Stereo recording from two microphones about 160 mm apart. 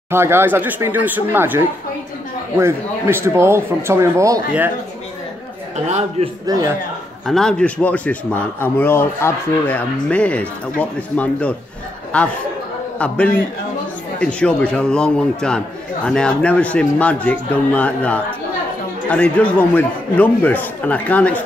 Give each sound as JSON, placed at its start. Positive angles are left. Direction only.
{"t": 0.1, "sound": "speech", "side_deg": -15}
{"t": 5.9, "sound": "a man's voice", "side_deg": -45}
{"t": 6.4, "sound": "a man's voice", "side_deg": -20}
{"t": 7.2, "sound": "a man's voice", "side_deg": 5}
{"t": 14.2, "sound": "a man's voice", "side_deg": 5}